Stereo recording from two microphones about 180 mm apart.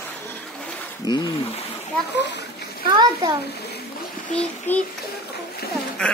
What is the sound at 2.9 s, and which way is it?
Speech, 25° right (ahead or behind).